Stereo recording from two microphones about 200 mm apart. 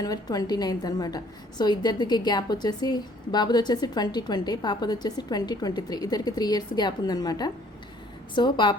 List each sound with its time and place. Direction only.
0.0 s a woman's voice: 20° left (ahead or behind)